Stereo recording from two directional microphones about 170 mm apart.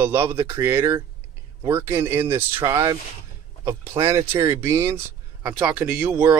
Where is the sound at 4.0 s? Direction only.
20° right (ahead or behind).